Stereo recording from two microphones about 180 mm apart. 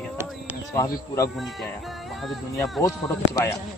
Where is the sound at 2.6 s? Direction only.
15° left (ahead or behind).